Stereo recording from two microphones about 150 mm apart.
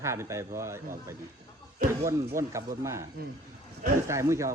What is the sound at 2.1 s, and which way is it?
Speech, 20° right (ahead or behind).